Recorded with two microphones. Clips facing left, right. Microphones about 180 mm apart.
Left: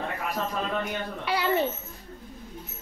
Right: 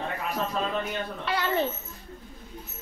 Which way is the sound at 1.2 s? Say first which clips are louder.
Left 2 dB; 10° left (ahead or behind).